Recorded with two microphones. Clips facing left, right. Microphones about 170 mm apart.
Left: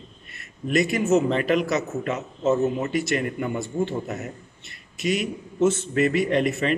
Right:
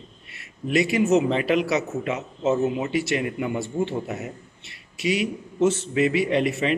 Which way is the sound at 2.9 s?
45° left (ahead or behind).